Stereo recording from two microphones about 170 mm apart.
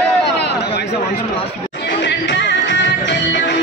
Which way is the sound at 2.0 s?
90° left.